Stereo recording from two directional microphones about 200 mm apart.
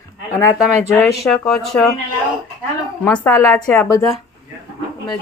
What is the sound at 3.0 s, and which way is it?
A woman's voice, 10° left (ahead or behind).